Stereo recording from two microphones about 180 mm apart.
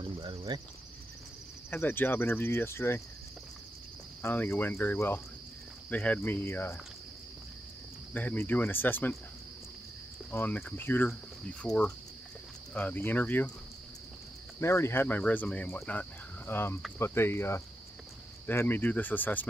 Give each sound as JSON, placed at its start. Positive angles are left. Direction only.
{"t": 0.2, "sound": "speech", "side_deg": -20}
{"t": 1.7, "sound": "cricket", "side_deg": 10}
{"t": 4.2, "sound": "cricket", "side_deg": 10}
{"t": 8.1, "sound": "cricket", "side_deg": 10}
{"t": 10.3, "sound": "cricket", "side_deg": 10}
{"t": 11.6, "sound": "speech", "side_deg": 5}
{"t": 12.7, "sound": "cricket", "side_deg": 10}
{"t": 14.6, "sound": "cricket", "side_deg": 15}